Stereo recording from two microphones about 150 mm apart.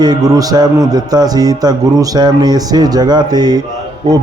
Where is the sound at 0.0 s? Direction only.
25° right (ahead or behind).